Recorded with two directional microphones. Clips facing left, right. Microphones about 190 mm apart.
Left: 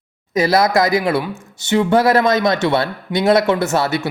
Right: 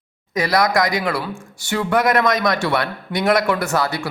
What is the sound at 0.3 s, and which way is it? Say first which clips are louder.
Speech: left 3 dB; 25° left (ahead or behind).